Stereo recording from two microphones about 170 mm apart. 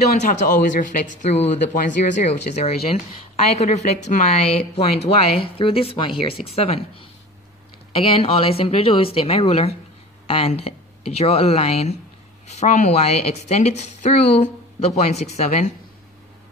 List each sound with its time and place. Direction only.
0.2 s a woman's voice: 50° left (ahead or behind)